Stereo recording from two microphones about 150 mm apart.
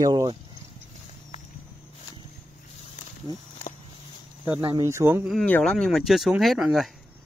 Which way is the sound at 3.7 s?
60° left (ahead or behind).